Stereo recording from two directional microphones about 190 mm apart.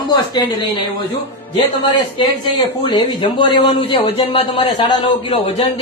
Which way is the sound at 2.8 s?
25° left (ahead or behind).